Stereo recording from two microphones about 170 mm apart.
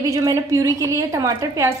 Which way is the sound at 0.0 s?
20° right (ahead or behind).